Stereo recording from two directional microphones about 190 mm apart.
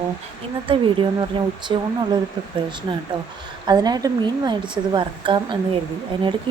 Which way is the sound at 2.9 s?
25° right (ahead or behind).